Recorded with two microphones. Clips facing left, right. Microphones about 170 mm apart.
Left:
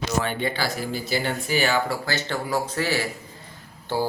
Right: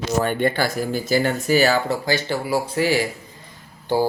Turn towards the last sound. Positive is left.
turn(degrees=-15)  # may be behind; listen again after turning